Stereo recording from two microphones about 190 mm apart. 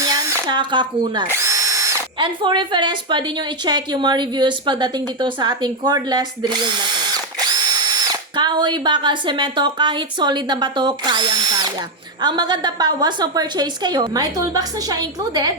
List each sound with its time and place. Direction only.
0.4 s a woman's voice: 25° right (ahead or behind)